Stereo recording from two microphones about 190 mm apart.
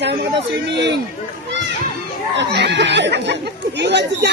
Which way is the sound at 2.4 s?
65° right (ahead or behind).